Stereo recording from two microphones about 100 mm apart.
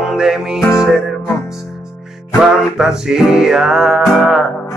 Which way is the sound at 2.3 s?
5° right (ahead or behind).